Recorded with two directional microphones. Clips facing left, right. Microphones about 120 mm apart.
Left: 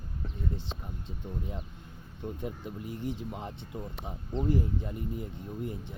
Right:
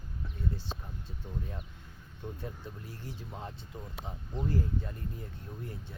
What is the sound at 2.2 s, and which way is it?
Speech, 15° left (ahead or behind).